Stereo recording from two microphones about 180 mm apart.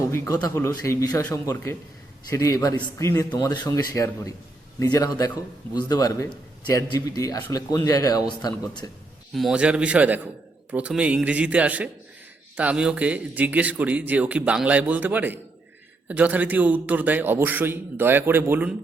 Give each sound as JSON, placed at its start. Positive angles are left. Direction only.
{"t": 0.4, "sound": "a man's voice", "side_deg": 15}
{"t": 9.3, "sound": "speech", "side_deg": 0}